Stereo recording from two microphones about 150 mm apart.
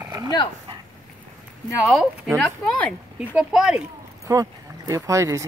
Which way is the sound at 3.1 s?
5° right (ahead or behind).